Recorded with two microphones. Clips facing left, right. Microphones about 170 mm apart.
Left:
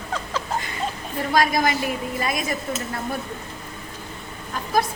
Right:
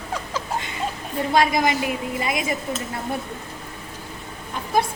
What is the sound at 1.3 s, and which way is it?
A woman's voice, 25° right (ahead or behind).